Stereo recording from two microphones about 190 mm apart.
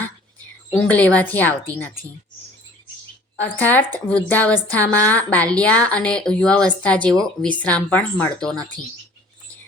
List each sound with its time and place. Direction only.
0.7 s a woman's voice: 5° left (ahead or behind)
3.3 s a woman's voice: 10° left (ahead or behind)